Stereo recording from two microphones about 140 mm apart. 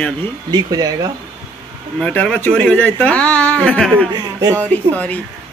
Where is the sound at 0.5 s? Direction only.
25° right (ahead or behind).